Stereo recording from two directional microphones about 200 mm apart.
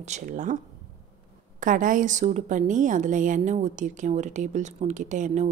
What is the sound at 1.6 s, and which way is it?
A woman's voice, 40° right (ahead or behind).